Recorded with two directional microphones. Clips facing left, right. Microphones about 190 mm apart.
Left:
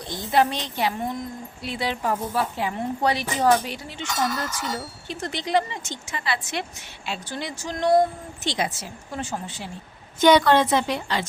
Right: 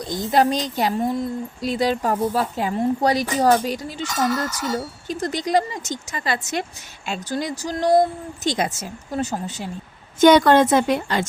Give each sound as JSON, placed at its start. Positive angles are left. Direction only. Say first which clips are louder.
{"t": 0.1, "sound": "a woman's voice", "louder": "right 3 dB", "side_deg": -40}